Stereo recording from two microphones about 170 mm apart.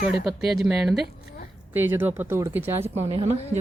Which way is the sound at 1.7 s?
15° right (ahead or behind).